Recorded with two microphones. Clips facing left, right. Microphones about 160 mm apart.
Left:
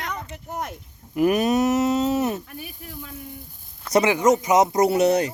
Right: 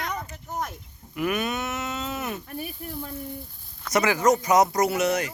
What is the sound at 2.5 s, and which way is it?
Speech, 40° right (ahead or behind).